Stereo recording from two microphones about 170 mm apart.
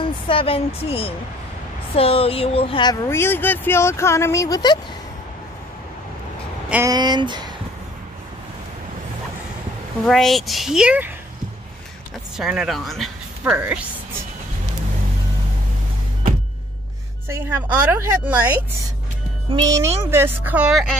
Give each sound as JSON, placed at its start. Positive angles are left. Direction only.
{"t": 0.0, "sound": "speech", "side_deg": 30}
{"t": 6.7, "sound": "speech", "side_deg": -20}
{"t": 10.0, "sound": "speech", "side_deg": 0}
{"t": 12.4, "sound": "speech", "side_deg": -5}
{"t": 17.3, "sound": "a woman's voice", "side_deg": -15}
{"t": 19.5, "sound": "a woman's voice", "side_deg": -20}